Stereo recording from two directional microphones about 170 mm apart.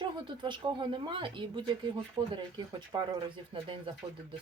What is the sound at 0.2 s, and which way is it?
Speech, 25° right (ahead or behind).